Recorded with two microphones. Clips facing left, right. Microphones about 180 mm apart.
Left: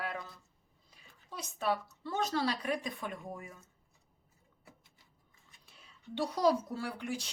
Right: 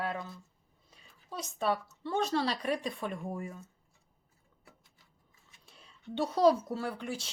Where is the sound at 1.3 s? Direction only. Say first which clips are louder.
Right 2 dB; 30° right (ahead or behind).